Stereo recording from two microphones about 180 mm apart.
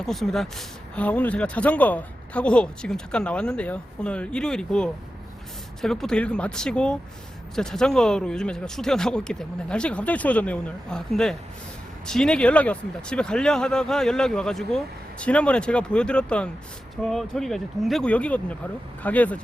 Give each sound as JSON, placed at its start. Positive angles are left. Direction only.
{"t": 0.0, "sound": "speech", "side_deg": 0}